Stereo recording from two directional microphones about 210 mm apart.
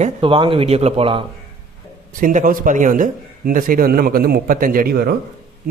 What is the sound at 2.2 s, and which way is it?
A man's voice, 40° right (ahead or behind).